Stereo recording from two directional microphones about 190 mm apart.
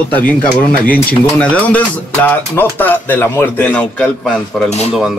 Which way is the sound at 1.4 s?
5° left (ahead or behind).